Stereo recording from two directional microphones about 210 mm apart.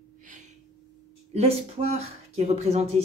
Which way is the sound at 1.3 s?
30° right (ahead or behind).